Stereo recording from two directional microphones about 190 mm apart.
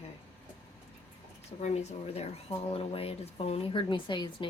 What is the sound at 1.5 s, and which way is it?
A woman's voice, 35° left (ahead or behind).